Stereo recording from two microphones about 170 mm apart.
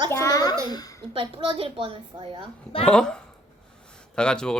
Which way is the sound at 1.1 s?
30° right (ahead or behind).